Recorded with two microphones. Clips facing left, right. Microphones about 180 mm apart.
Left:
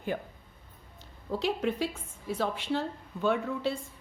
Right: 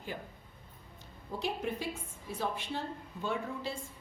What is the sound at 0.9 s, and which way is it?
A woman's voice, 85° left.